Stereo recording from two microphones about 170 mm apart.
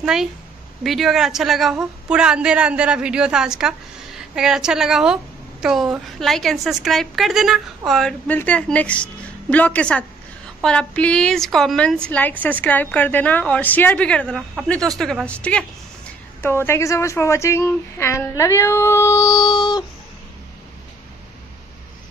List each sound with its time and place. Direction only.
0.0 s a woman's voice: 5° right (ahead or behind); by 19.8 s 25° left (ahead or behind)